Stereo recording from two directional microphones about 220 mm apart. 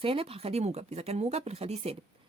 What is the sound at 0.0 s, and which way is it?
Speech, 25° right (ahead or behind).